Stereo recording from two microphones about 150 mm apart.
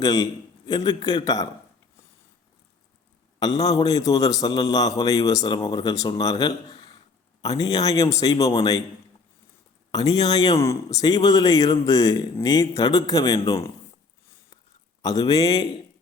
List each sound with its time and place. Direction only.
0.0 s speech: 25° left (ahead or behind)
3.4 s speech: 25° left (ahead or behind)
7.6 s speech: 25° left (ahead or behind)
8.4 s a man's voice: 35° left (ahead or behind)
9.9 s speech: 25° left (ahead or behind)
15.0 s speech: 25° left (ahead or behind)